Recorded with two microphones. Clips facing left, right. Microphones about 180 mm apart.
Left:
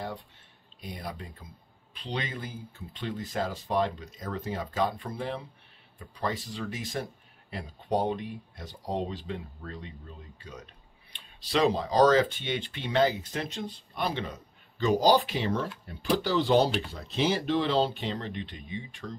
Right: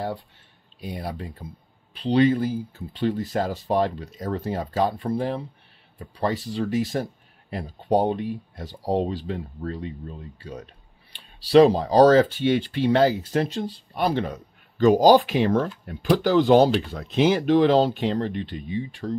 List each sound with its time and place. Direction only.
0.9 s speech: 60° right (ahead or behind)
2.0 s speech: 35° right (ahead or behind)
6.9 s speech: 45° right (ahead or behind)
7.9 s speech: 35° right (ahead or behind)
14.8 s speech: 45° right (ahead or behind)